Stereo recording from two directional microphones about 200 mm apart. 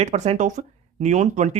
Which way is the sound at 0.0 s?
35° right (ahead or behind).